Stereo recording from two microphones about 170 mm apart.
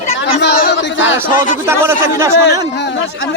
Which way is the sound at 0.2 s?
85° left.